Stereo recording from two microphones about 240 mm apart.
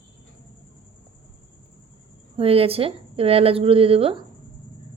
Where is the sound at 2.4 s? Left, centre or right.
Right.